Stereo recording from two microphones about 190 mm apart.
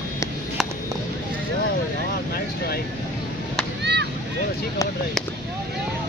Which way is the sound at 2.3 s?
55° left (ahead or behind).